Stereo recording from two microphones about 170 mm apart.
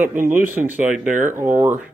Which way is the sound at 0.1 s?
50° right (ahead or behind).